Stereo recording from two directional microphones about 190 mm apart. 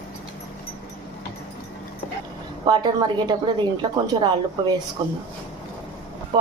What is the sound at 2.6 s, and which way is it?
A woman's voice, 20° right (ahead or behind).